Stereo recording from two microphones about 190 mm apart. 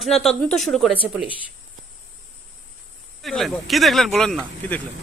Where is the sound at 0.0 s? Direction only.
Centre (ahead or behind).